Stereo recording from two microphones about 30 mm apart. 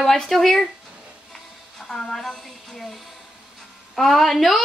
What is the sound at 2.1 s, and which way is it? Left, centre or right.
Speech, centre.